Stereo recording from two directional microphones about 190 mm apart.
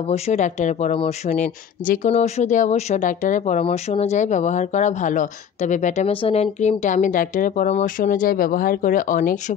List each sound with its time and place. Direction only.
0.1 s speech: 40° left (ahead or behind)